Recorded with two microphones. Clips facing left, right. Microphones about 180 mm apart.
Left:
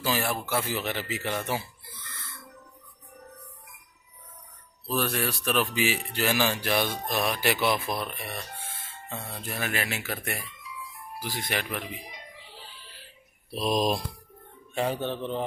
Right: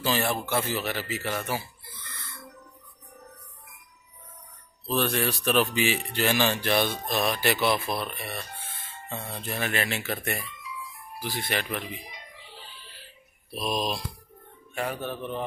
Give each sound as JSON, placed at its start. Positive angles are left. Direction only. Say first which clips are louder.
{"t": 0.0, "sound": "speech", "louder": "right 2 dB", "side_deg": 5}
{"t": 0.7, "sound": "speech", "louder": "right 1 dB", "side_deg": 15}
{"t": 4.9, "sound": "speech", "louder": "right 2 dB", "side_deg": 5}
{"t": 13.5, "sound": "speech", "louder": "left 4 dB", "side_deg": 35}
{"t": 14.7, "sound": "speech", "louder": "left 3 dB", "side_deg": 30}